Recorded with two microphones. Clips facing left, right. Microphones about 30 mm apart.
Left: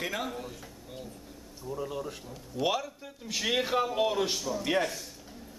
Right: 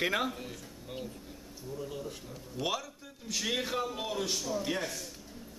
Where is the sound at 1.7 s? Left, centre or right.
Left.